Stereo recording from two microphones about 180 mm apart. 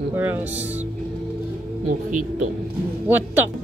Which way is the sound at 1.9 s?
45° right (ahead or behind).